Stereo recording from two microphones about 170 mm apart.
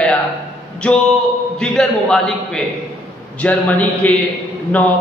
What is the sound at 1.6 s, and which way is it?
A man's voice, 5° left (ahead or behind).